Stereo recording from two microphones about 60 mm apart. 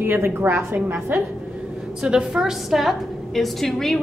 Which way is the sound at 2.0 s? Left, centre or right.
Centre.